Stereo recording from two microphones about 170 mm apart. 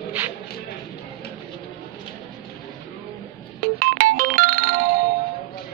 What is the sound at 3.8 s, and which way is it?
Music, 60° right (ahead or behind).